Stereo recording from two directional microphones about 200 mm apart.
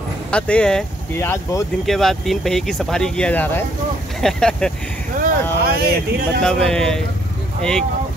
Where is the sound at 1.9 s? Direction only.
Centre (ahead or behind).